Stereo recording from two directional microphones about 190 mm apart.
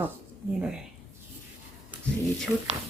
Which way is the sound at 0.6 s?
5° right (ahead or behind).